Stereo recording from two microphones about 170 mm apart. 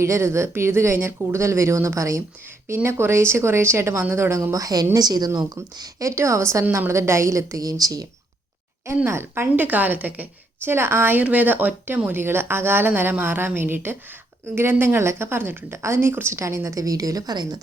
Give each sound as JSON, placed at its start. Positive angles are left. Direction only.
{"t": 0.0, "sound": "speech", "side_deg": -15}